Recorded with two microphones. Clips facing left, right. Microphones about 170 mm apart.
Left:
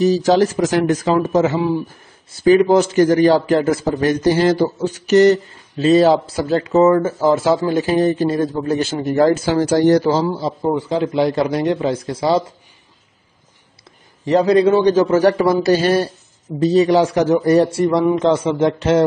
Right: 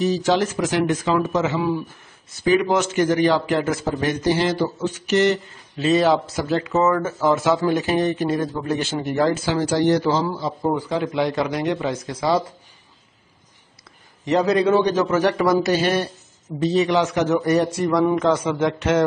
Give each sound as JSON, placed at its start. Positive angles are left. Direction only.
{"t": 0.0, "sound": "a man's voice", "side_deg": 40}
{"t": 14.2, "sound": "a man's voice", "side_deg": 35}